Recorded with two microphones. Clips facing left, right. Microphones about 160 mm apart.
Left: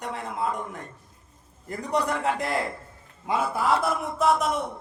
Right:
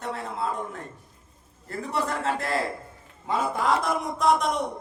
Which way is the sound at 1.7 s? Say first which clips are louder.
Left 2 dB; 15° left (ahead or behind).